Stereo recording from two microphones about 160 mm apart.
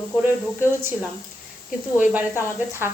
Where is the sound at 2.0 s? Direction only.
10° right (ahead or behind).